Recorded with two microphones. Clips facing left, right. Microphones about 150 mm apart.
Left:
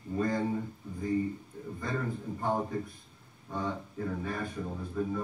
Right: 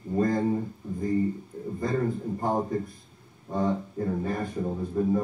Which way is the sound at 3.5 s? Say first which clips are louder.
Right 8 dB; 40° right (ahead or behind).